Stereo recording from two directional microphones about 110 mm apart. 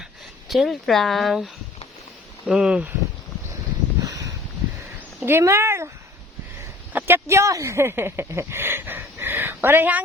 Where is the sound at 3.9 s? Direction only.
35° right (ahead or behind).